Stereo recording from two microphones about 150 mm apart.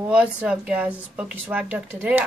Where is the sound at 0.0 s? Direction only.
10° right (ahead or behind).